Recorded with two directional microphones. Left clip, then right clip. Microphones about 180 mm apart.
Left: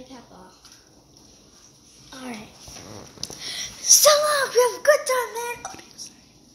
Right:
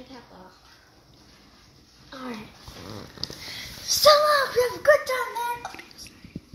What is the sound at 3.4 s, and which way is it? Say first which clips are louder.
A child's voice: left 11 dB; 40° left (ahead or behind).